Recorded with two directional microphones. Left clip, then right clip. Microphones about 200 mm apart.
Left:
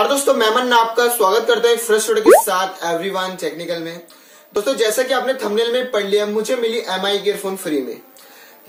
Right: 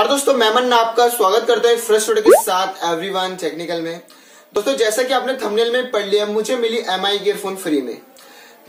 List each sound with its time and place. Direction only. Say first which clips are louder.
0.0 s speech: even; 5° right (ahead or behind)
2.0 s speech: left 2 dB; 10° left (ahead or behind)
2.4 s speech: right 1 dB; 5° right (ahead or behind)